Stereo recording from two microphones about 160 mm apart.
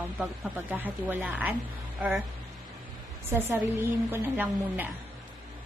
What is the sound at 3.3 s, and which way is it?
A woman's voice, 15° right (ahead or behind).